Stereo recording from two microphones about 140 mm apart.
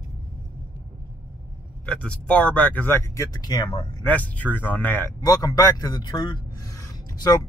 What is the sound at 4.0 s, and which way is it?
Speech, 10° left (ahead or behind).